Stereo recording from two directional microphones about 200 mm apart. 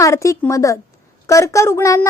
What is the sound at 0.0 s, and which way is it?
A woman's voice, 15° left (ahead or behind).